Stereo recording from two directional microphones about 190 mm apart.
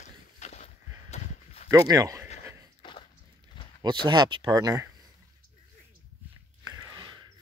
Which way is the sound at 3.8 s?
25° right (ahead or behind).